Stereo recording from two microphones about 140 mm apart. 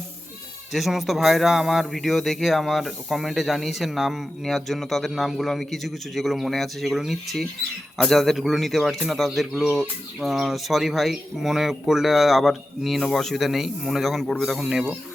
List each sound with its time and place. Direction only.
0.7 s a man's voice: centre (ahead or behind)